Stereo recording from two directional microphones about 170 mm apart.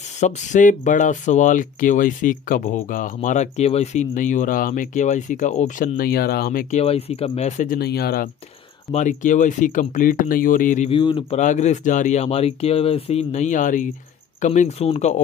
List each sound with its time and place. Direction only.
0.2 s speech: 45° left (ahead or behind)
6.8 s speech: 35° left (ahead or behind)
7.7 s speech: 70° left (ahead or behind)
8.9 s speech: 45° left (ahead or behind)
10.9 s speech: 30° left (ahead or behind)
11.4 s speech: 45° left (ahead or behind)